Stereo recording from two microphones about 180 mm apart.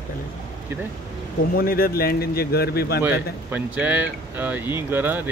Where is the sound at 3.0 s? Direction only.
10° right (ahead or behind).